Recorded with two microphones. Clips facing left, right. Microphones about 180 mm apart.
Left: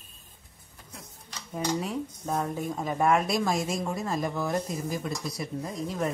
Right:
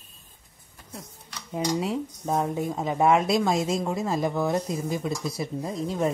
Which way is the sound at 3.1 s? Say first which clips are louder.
Right 4 dB; centre (ahead or behind).